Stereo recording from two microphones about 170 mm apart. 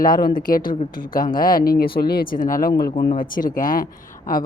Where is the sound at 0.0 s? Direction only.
60° left (ahead or behind).